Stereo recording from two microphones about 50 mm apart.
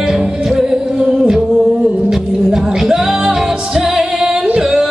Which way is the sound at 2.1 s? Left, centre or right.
Centre.